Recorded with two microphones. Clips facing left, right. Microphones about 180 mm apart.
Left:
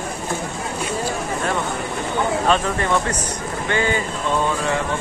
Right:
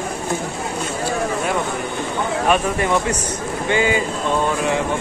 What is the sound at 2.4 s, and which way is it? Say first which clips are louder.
Speech: right 1 dB; 15° right (ahead or behind).